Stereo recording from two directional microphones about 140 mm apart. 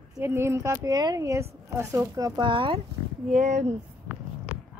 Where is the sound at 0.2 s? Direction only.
15° right (ahead or behind); by 2.8 s 35° right (ahead or behind).